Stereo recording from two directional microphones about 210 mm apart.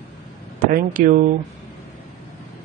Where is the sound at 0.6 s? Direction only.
40° right (ahead or behind).